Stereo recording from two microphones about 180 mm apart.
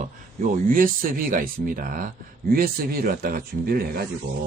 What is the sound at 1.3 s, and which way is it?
Speech, 50° right (ahead or behind).